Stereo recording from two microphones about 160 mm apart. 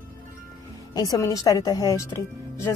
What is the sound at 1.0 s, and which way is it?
A woman's voice, 20° left (ahead or behind).